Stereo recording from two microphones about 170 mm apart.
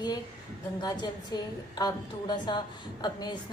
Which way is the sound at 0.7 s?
25° left (ahead or behind).